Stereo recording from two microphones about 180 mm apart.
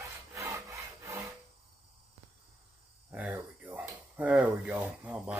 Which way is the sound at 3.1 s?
10° right (ahead or behind).